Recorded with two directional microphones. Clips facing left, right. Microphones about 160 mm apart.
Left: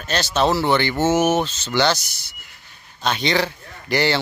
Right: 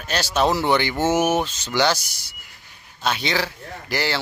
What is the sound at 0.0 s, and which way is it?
Speech, 10° right (ahead or behind).